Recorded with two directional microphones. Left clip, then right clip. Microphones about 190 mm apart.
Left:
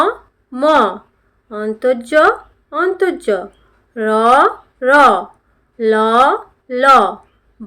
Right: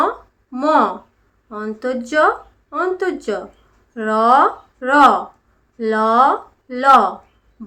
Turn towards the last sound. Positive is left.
turn(degrees=25)  # may be behind; listen again after turning